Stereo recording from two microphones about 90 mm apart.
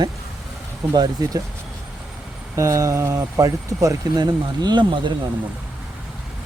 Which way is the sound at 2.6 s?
35° right (ahead or behind).